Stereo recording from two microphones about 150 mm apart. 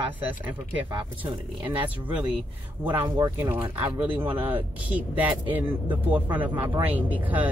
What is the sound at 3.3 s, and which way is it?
Speech, 15° right (ahead or behind).